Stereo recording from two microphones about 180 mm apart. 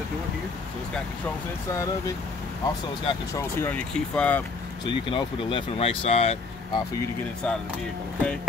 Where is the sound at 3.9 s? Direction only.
5° left (ahead or behind).